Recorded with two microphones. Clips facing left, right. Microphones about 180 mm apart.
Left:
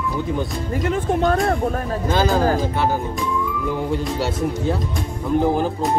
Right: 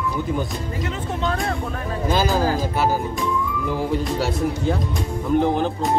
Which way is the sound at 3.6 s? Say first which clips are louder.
Right 1 dB; centre (ahead or behind).